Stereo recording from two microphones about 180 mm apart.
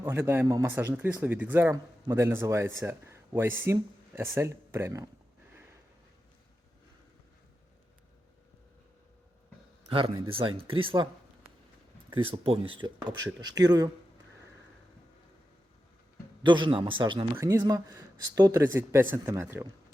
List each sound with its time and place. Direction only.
0.0 s speech: 15° right (ahead or behind)
9.9 s speech: 30° right (ahead or behind)
12.1 s speech: 30° right (ahead or behind)
16.4 s speech: 25° right (ahead or behind)
17.3 s speech: 15° right (ahead or behind)